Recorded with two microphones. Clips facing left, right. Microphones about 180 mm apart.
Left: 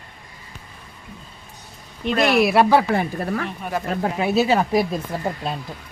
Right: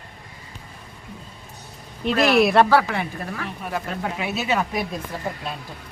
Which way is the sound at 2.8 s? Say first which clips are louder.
Left 6 dB; 40° left (ahead or behind).